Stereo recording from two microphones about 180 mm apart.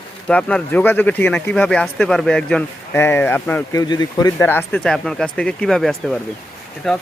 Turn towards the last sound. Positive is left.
turn(degrees=0)  # may be behind; listen again after turning